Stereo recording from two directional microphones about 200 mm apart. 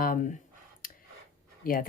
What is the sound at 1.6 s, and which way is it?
Speech, 45° left (ahead or behind).